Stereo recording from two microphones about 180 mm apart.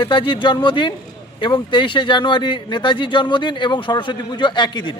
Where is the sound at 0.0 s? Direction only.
30° left (ahead or behind).